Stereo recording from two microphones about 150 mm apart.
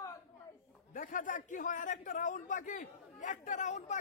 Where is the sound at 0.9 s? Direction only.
60° left (ahead or behind).